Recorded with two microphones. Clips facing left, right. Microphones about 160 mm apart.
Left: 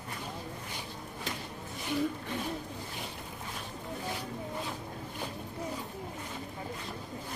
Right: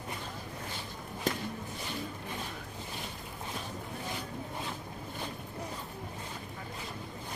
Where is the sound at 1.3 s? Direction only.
45° right (ahead or behind).